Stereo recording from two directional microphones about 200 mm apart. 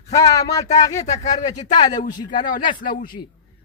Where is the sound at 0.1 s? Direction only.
15° left (ahead or behind).